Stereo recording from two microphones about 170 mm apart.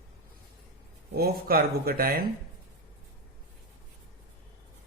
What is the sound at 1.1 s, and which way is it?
Speech, 60° right (ahead or behind).